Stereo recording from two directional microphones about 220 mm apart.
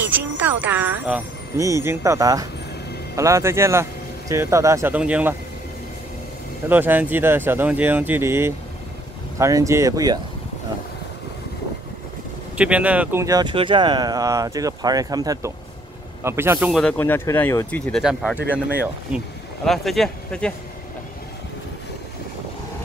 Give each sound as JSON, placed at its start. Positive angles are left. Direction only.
{"t": 0.0, "sound": "speech", "side_deg": -10}
{"t": 6.7, "sound": "speech", "side_deg": -10}
{"t": 12.5, "sound": "speech", "side_deg": -5}